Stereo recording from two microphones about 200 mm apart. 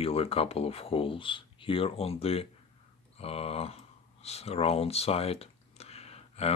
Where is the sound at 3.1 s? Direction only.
30° left (ahead or behind).